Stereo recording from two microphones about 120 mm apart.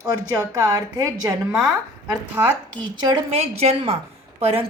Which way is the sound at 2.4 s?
25° right (ahead or behind).